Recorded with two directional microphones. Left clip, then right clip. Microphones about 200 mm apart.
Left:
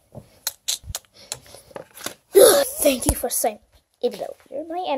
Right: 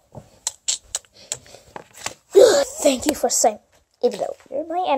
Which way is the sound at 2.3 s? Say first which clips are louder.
Even; 10° left (ahead or behind).